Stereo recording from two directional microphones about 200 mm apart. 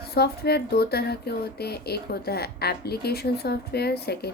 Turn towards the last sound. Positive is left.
turn(degrees=55)  # may be behind; listen again after turning